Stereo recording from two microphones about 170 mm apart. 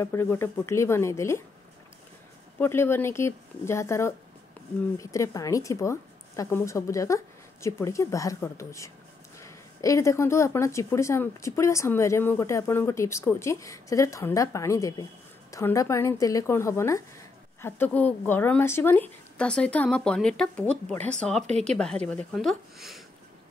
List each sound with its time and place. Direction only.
0.0 s a woman's voice: 15° left (ahead or behind)
2.6 s a woman's voice: 15° left (ahead or behind)